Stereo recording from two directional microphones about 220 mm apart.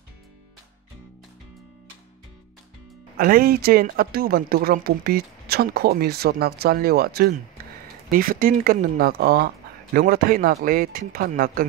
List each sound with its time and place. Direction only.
3.2 s speech: 40° right (ahead or behind)